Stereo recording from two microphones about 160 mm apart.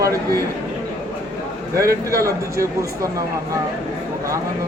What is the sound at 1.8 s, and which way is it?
Speech, 20° right (ahead or behind).